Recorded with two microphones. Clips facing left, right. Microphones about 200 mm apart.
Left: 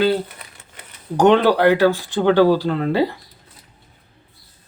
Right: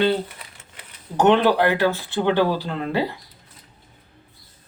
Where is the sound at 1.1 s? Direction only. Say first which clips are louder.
Left 3 dB; 15° left (ahead or behind).